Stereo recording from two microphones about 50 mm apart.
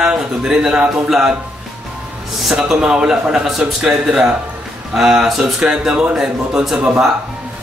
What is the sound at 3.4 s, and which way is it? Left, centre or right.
A man's voice, centre.